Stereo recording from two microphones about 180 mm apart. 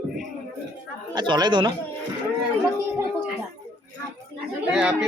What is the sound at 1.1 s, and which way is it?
Speech, 25° right (ahead or behind).